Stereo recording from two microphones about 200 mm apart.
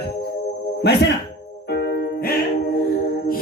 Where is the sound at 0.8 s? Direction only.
55° left (ahead or behind).